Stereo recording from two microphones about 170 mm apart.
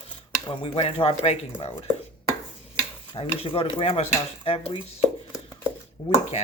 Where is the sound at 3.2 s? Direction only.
35° left (ahead or behind).